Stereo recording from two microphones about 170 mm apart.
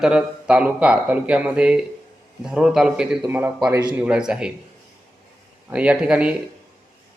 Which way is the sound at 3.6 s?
25° right (ahead or behind).